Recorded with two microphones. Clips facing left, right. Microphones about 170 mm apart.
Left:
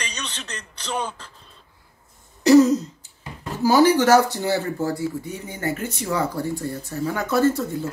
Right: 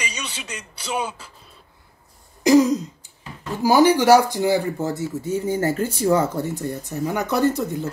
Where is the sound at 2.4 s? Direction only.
15° right (ahead or behind).